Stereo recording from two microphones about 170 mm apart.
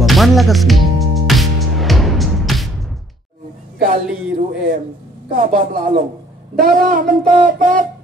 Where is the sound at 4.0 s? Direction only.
5° right (ahead or behind).